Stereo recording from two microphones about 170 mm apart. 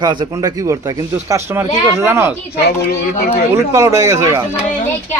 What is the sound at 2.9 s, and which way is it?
Speech, 60° left (ahead or behind).